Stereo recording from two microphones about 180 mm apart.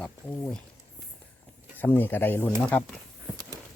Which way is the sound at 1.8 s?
10° left (ahead or behind).